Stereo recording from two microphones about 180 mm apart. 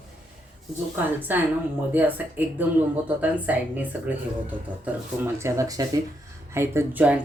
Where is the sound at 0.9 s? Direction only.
10° right (ahead or behind).